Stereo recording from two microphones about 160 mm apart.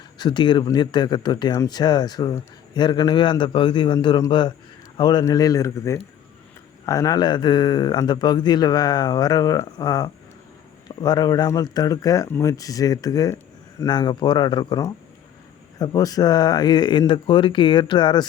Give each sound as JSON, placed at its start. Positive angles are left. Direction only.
{"t": 0.2, "sound": "speech", "side_deg": 30}